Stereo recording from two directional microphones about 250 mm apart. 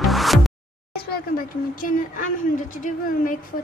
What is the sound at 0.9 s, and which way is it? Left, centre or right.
Speech, left.